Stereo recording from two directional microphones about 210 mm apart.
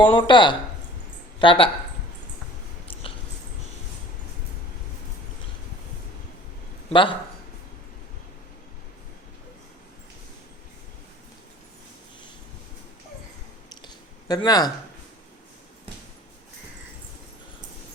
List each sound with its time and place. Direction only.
0.0 s speech: 20° left (ahead or behind)
6.9 s speech: 25° left (ahead or behind)
13.7 s a sound: 20° left (ahead or behind)